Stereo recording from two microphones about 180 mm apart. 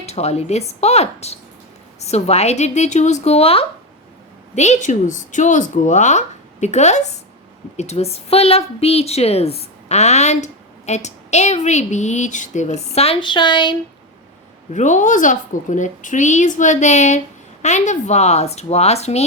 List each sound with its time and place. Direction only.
0.0 s a woman's voice: 35° left (ahead or behind)
14.7 s a woman's voice: 40° left (ahead or behind)